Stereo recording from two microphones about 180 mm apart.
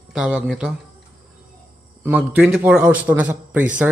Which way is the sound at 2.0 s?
5° right (ahead or behind).